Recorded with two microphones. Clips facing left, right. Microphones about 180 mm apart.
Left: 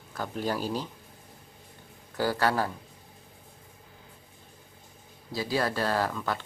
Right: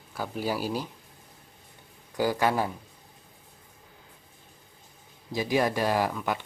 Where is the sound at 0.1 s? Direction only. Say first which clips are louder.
Right 1 dB; 10° right (ahead or behind).